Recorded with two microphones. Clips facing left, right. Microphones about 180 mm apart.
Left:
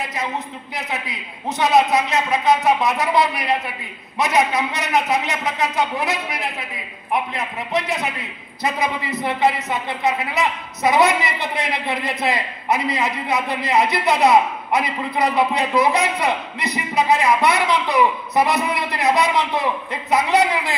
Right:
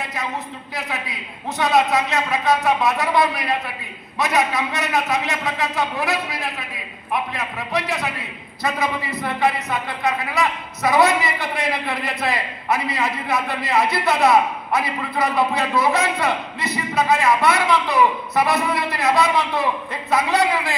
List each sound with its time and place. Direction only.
0.7 s a man's voice: 20° left (ahead or behind)